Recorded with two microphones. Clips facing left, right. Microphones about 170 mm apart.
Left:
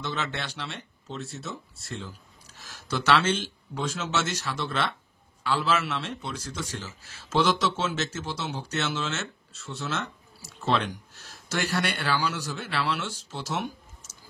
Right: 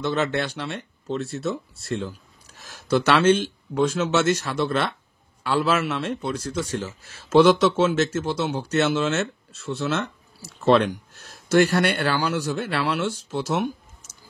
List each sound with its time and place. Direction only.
0.0 s a man's voice: 50° right (ahead or behind)